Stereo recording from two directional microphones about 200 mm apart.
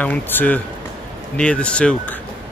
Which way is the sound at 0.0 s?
10° left (ahead or behind).